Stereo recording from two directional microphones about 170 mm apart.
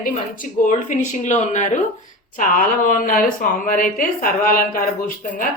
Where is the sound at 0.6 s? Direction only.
45° left (ahead or behind).